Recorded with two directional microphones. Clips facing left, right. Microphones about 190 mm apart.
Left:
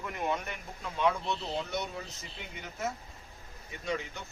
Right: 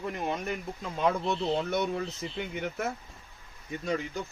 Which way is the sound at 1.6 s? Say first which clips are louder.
Right 7 dB; 55° right (ahead or behind).